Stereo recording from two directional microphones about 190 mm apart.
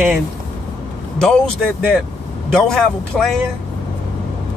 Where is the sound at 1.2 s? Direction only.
5° left (ahead or behind).